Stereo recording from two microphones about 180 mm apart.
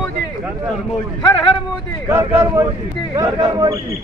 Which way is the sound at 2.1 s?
15° right (ahead or behind).